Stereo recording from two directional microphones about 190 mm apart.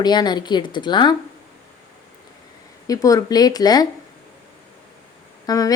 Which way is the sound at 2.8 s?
20° left (ahead or behind).